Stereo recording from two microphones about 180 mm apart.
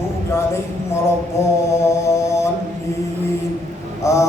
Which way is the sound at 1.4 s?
15° left (ahead or behind).